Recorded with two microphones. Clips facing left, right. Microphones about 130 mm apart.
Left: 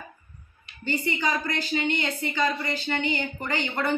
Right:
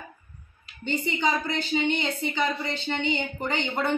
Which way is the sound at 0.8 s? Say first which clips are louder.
Right 1 dB; 20° right (ahead or behind).